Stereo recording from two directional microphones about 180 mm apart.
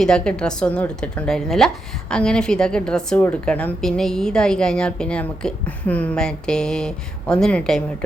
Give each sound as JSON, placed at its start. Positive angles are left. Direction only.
{"t": 0.0, "sound": "a woman's voice", "side_deg": 5}